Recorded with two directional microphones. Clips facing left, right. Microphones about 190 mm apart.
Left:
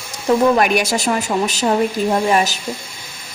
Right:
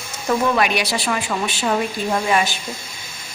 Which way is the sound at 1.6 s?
25° left (ahead or behind).